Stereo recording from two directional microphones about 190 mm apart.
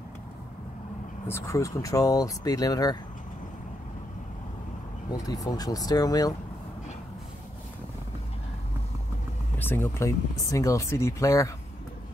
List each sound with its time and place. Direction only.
1.2 s speech: 15° left (ahead or behind)
5.1 s speech: 20° left (ahead or behind)
9.6 s speech: 10° left (ahead or behind)